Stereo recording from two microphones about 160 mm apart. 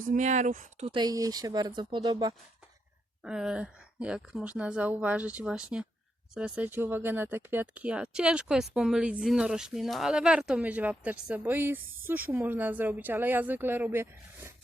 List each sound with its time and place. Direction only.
0.0 s speech: 50° right (ahead or behind)
0.9 s speech: 25° right (ahead or behind)
3.2 s speech: 5° right (ahead or behind)